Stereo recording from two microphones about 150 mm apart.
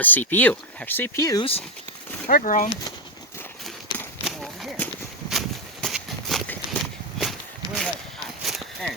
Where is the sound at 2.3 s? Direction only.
60° left (ahead or behind).